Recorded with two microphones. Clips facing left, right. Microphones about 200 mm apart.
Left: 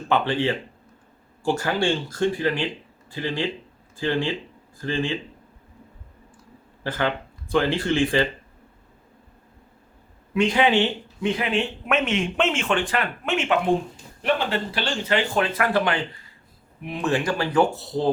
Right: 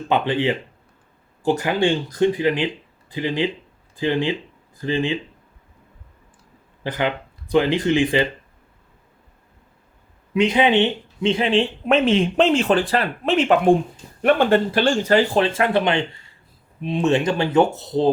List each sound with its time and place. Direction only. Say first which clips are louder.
0.1 s speech: right 2 dB; 20° right (ahead or behind)
6.8 s speech: right 2 dB; 15° right (ahead or behind)
10.3 s speech: right 3 dB; 20° right (ahead or behind); by 13.7 s 40° right (ahead or behind)
14.2 s speech: right 8 dB; 55° right (ahead or behind); by 18.1 s 20° right (ahead or behind)